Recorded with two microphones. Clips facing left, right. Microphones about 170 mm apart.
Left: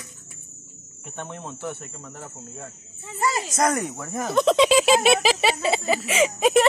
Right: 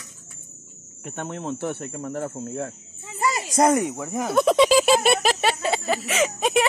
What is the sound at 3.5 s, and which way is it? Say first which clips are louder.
Speech: right 7 dB; 30° right (ahead or behind).